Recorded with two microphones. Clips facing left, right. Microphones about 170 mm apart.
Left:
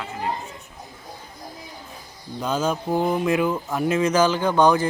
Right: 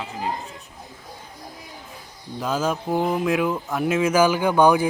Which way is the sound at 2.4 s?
Centre (ahead or behind).